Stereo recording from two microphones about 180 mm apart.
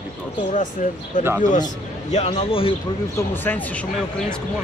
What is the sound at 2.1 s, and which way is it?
Speech, 30° left (ahead or behind).